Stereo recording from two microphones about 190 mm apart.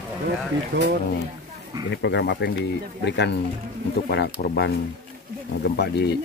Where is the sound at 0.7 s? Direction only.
60° right (ahead or behind).